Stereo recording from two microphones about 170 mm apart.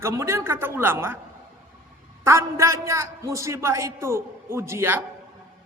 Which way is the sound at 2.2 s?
15° right (ahead or behind).